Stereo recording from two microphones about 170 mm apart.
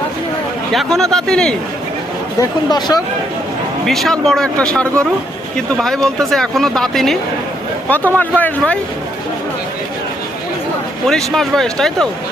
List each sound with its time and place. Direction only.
0.7 s speech: centre (ahead or behind)
2.4 s speech: 25° left (ahead or behind)
3.8 s speech: centre (ahead or behind)
11.1 s speech: centre (ahead or behind)